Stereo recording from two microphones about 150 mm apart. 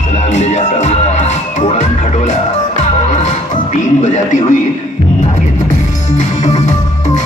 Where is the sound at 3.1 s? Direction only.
55° left (ahead or behind).